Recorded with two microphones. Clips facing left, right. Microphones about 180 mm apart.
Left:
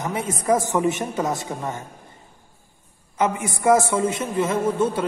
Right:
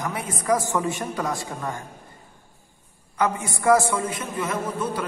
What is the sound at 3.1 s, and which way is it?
A man's voice, 20° left (ahead or behind).